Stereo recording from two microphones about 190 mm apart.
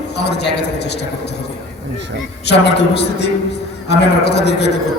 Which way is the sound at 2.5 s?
60° left (ahead or behind).